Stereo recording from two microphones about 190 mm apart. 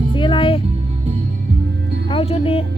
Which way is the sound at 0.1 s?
25° left (ahead or behind).